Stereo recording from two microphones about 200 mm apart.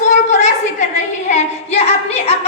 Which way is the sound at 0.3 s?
35° left (ahead or behind).